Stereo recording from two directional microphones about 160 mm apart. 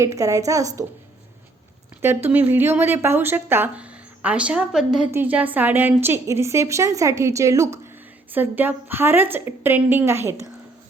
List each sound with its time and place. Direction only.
0.0 s a woman's voice: 20° right (ahead or behind)
2.0 s speech: 15° right (ahead or behind)